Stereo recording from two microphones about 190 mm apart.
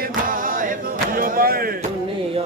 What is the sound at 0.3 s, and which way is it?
Singing, 45° right (ahead or behind).